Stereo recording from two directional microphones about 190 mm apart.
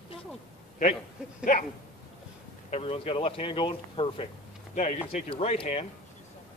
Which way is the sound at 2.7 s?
30° left (ahead or behind).